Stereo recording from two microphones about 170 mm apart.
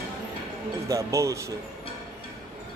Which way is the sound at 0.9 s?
20° right (ahead or behind).